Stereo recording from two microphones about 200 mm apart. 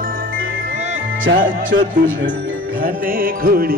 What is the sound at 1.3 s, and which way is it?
Music, 65° right (ahead or behind).